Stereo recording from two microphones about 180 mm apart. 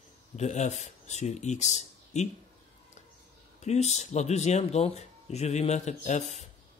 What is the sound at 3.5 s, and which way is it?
Speech, 40° left (ahead or behind).